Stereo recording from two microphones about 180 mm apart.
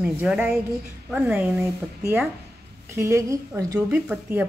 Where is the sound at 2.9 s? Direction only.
15° right (ahead or behind).